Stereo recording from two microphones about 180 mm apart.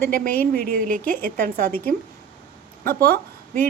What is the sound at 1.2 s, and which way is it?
Speech, 55° right (ahead or behind).